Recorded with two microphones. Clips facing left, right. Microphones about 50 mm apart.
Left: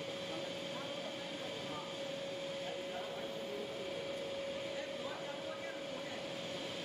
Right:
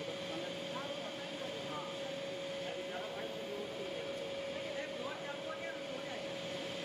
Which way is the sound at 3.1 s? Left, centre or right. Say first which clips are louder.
Even; centre.